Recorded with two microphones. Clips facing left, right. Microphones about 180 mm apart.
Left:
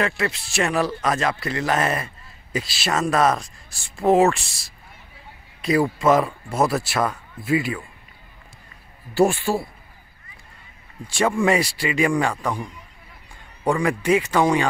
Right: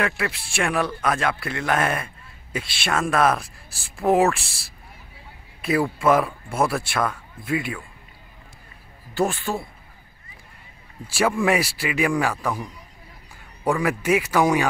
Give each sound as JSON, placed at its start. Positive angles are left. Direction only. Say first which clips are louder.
{"t": 0.0, "sound": "speech", "louder": "left 2 dB", "side_deg": 0}
{"t": 9.1, "sound": "speech", "louder": "left 5 dB", "side_deg": 10}
{"t": 11.1, "sound": "a man's voice", "louder": "left 1 dB", "side_deg": -5}